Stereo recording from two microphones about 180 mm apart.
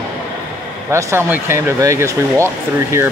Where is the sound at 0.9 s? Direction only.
15° right (ahead or behind).